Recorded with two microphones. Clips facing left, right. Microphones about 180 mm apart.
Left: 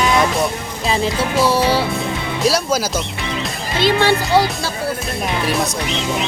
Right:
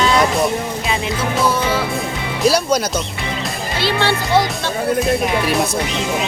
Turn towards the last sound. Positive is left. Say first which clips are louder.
# left 2 dB
turn(degrees=15)  # may be behind; listen again after turning